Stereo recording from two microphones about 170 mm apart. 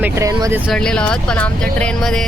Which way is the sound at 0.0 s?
20° right (ahead or behind).